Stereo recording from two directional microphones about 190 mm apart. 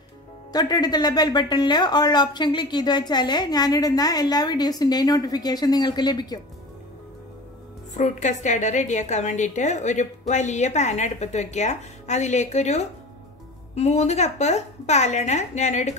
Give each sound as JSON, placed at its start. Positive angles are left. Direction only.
{"t": 0.5, "sound": "a woman's voice", "side_deg": 20}
{"t": 7.9, "sound": "a woman's voice", "side_deg": 40}